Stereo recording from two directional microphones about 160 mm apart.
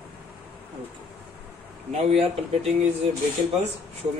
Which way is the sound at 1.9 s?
40° right (ahead or behind).